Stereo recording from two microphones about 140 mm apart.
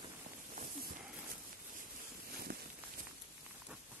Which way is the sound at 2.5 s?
90° right.